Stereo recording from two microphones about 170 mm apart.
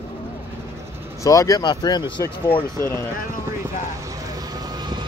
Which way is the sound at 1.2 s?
20° left (ahead or behind).